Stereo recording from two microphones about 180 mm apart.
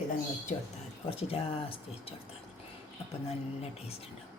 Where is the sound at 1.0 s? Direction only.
30° left (ahead or behind).